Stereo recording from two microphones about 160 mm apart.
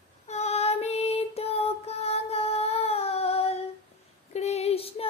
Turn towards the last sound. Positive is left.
turn(degrees=35)  # may be behind; listen again after turning